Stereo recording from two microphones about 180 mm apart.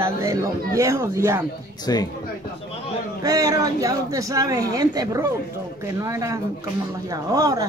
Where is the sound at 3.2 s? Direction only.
20° right (ahead or behind).